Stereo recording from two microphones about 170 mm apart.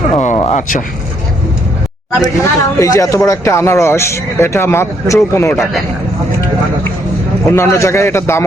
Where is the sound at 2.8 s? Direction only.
20° left (ahead or behind).